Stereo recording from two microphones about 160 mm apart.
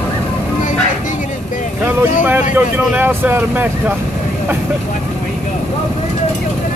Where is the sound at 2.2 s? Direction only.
10° right (ahead or behind).